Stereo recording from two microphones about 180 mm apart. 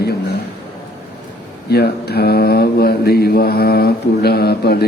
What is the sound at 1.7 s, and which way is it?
Speech, 65° left (ahead or behind).